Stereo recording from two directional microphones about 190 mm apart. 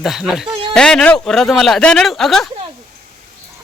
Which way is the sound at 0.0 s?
Centre (ahead or behind).